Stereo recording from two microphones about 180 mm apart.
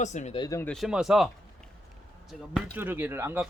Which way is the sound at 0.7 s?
Centre (ahead or behind).